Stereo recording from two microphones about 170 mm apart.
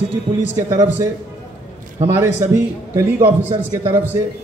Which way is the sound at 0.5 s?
20° right (ahead or behind).